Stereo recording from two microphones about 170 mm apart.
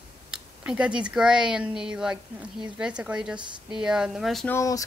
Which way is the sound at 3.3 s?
25° right (ahead or behind).